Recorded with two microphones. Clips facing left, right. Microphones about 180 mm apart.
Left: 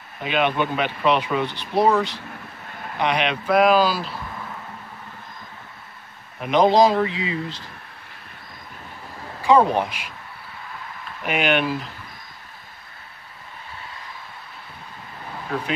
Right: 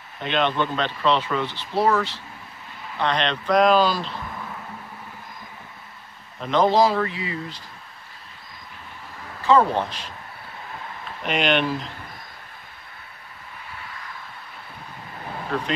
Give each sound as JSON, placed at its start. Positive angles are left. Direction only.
{"t": 0.2, "sound": "speech", "side_deg": 5}
{"t": 6.4, "sound": "speech", "side_deg": 15}
{"t": 9.4, "sound": "speech", "side_deg": 15}
{"t": 11.2, "sound": "speech", "side_deg": 5}
{"t": 15.5, "sound": "speech", "side_deg": 10}